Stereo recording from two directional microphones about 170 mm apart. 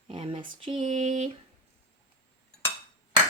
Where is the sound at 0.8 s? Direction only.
45° right (ahead or behind).